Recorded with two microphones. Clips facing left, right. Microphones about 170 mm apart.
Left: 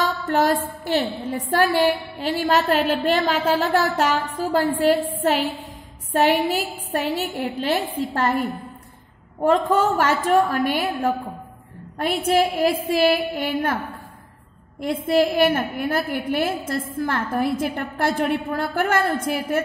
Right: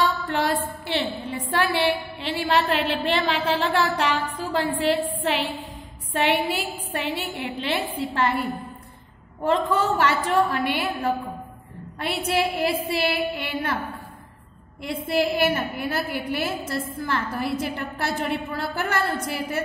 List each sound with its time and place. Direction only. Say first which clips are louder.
0.0 s a woman's voice: left 3 dB; 45° left (ahead or behind)
9.4 s a woman's voice: left 4 dB; 50° left (ahead or behind)
15.0 s a woman's voice: left 4 dB; 50° left (ahead or behind)